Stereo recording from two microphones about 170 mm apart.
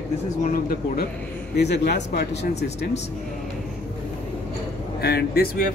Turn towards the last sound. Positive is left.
turn(degrees=65)  # may be behind; listen again after turning